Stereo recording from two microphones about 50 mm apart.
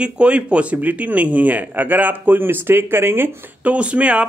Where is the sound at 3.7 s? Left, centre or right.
Right.